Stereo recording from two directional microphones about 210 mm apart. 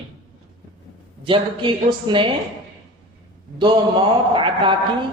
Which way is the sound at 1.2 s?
25° right (ahead or behind).